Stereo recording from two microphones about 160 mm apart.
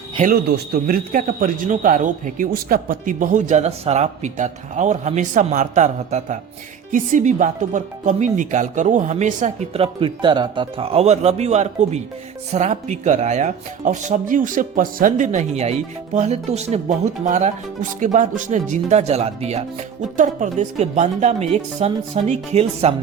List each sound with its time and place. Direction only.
0.5 s speech: 70° right (ahead or behind); by 23.0 s 40° right (ahead or behind)